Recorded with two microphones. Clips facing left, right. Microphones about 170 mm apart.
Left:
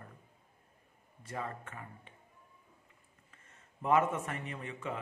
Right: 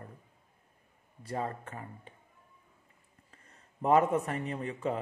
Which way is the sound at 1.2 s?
35° right (ahead or behind).